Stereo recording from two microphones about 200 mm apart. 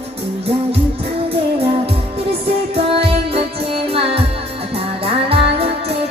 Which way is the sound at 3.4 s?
30° right (ahead or behind).